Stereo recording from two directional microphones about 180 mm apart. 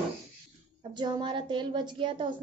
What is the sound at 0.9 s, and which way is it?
A woman's voice, 25° right (ahead or behind).